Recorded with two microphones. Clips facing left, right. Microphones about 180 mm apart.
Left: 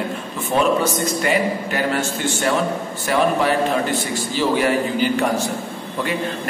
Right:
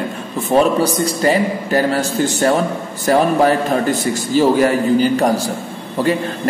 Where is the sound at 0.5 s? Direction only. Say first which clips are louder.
Right 4 dB; 35° right (ahead or behind).